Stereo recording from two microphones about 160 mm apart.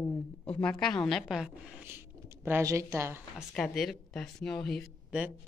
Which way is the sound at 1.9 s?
15° right (ahead or behind).